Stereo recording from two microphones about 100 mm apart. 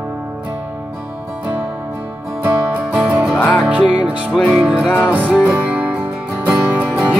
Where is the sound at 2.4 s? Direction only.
15° right (ahead or behind).